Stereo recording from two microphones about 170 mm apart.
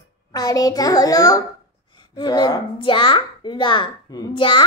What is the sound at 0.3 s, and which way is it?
A child's voice, 20° left (ahead or behind).